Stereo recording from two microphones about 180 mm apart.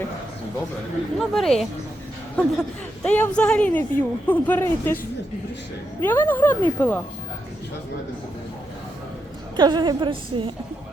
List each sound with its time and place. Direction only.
1.2 s speech: centre (ahead or behind)
6.0 s speech: 10° left (ahead or behind)
9.6 s a woman's voice: 25° right (ahead or behind)